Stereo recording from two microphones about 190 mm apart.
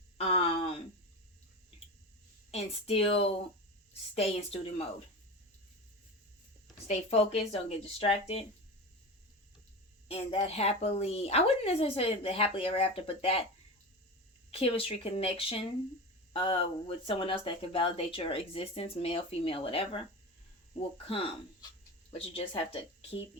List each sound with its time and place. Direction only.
0.2 s a sound: 30° left (ahead or behind)
2.5 s a woman's voice: 30° left (ahead or behind)
6.8 s a woman's voice: 35° left (ahead or behind)
10.1 s a woman's voice: 35° left (ahead or behind)
14.5 s a woman's voice: 30° left (ahead or behind)